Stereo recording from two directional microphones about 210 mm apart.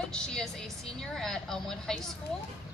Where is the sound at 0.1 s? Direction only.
5° left (ahead or behind).